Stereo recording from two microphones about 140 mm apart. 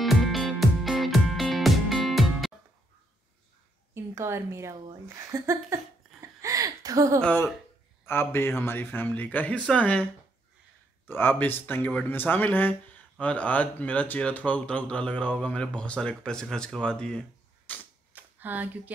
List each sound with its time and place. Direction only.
0.0 s music: centre (ahead or behind)
3.9 s a woman's voice: 20° right (ahead or behind)
6.4 s a sound: 25° right (ahead or behind)
7.2 s speech: 10° left (ahead or behind)
11.1 s speech: 15° left (ahead or behind)
18.1 s a sound: 10° right (ahead or behind)